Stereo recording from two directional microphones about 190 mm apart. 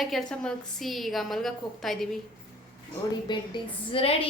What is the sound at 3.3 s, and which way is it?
Speech, 25° left (ahead or behind).